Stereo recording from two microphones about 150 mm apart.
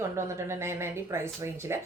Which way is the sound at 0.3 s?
15° right (ahead or behind).